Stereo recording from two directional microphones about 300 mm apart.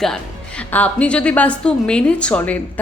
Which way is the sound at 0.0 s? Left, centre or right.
Centre.